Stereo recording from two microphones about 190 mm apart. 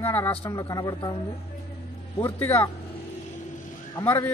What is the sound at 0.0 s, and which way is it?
Speech, 10° left (ahead or behind).